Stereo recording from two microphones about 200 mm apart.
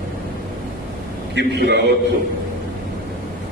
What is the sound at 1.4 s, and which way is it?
Speech, 55° right (ahead or behind).